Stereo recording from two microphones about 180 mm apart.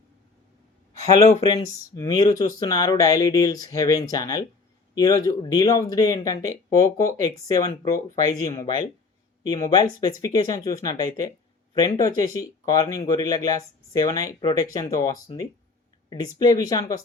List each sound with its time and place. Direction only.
1.6 s speech: 20° left (ahead or behind)